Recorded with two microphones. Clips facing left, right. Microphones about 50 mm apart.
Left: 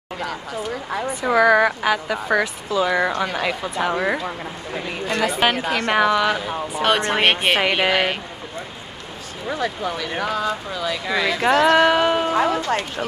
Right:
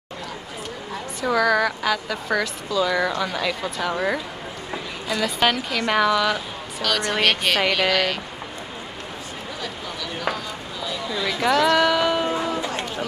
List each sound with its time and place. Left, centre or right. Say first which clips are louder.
1.2 s speech: left 4 dB; left
5.0 s a woman's voice: left 3 dB; left
5.5 s speech: left 2 dB; left
6.8 s speech: left 3 dB; left
9.5 s speech: left 11 dB; left
10.9 s speech: left 5 dB; left
11.4 s speech: left 3 dB; left
12.3 s speech: left 5 dB; left